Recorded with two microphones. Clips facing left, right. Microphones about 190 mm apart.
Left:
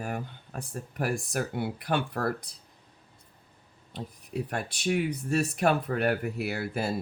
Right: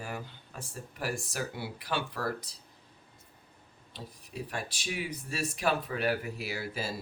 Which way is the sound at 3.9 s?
55° left (ahead or behind).